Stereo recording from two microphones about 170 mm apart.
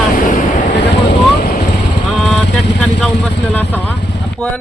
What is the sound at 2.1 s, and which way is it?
Speech, 5° left (ahead or behind).